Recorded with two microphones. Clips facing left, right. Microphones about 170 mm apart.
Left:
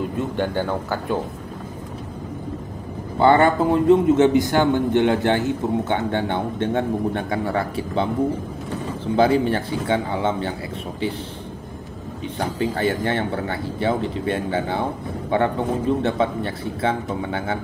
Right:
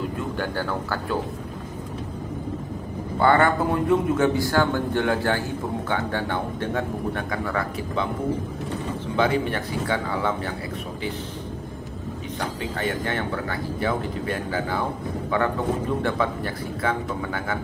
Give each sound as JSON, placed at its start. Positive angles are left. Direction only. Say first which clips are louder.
{"t": 0.4, "sound": "a man's voice", "louder": "left 5 dB", "side_deg": 20}
{"t": 3.2, "sound": "a man's voice", "louder": "left 4 dB", "side_deg": 25}
{"t": 9.1, "sound": "a man's voice", "louder": "left 5 dB", "side_deg": 30}
{"t": 12.4, "sound": "a man's voice", "louder": "left 7 dB", "side_deg": 30}